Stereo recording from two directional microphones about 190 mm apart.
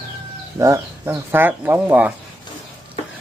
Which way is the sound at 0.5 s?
15° right (ahead or behind).